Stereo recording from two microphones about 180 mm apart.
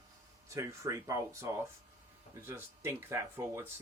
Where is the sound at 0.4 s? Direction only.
15° right (ahead or behind).